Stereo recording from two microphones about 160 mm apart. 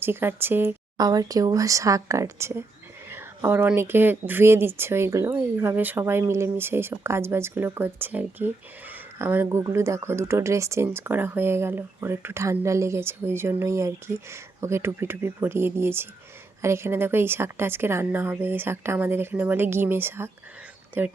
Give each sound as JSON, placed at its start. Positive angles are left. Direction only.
{"t": 0.0, "sound": "speech", "side_deg": -15}
{"t": 0.9, "sound": "speech", "side_deg": -25}